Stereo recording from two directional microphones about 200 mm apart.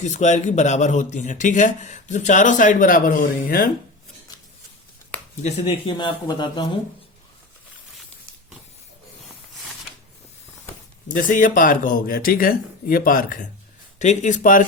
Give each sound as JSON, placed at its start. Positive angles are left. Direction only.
{"t": 0.0, "sound": "speech", "side_deg": 35}
{"t": 5.4, "sound": "speech", "side_deg": 35}
{"t": 11.1, "sound": "speech", "side_deg": 40}